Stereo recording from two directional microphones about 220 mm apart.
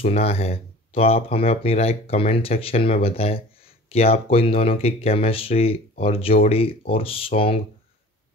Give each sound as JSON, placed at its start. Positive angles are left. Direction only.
{"t": 0.0, "sound": "speech", "side_deg": 25}